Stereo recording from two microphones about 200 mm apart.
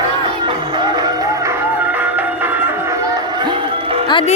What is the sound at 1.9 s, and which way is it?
Music, 10° right (ahead or behind).